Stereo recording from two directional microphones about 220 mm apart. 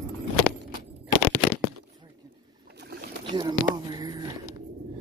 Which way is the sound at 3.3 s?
20° right (ahead or behind).